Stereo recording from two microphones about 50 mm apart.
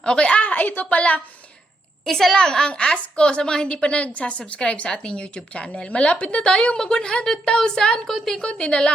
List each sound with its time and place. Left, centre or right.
0.0 s a woman's voice: centre
2.0 s a woman's voice: centre
8.0 s a woman's voice: centre
8.4 s a woman's voice: centre